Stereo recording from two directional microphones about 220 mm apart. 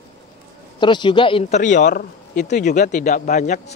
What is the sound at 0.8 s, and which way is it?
Speech, 20° left (ahead or behind).